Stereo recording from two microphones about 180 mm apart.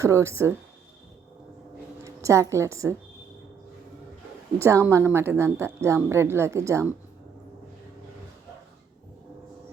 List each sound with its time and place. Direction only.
0.0 s a woman's voice: 15° right (ahead or behind)
2.0 s a woman's voice: 15° right (ahead or behind)
4.5 s a woman's voice: 15° right (ahead or behind)